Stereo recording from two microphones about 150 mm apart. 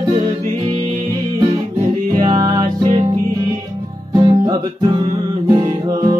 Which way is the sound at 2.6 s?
40° right (ahead or behind).